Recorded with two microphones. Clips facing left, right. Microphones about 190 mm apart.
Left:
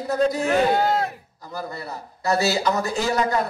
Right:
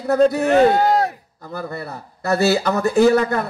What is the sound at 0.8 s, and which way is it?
Speech, 40° right (ahead or behind).